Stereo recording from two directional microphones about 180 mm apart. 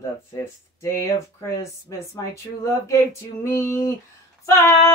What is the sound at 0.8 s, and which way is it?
Female singing, 15° left (ahead or behind).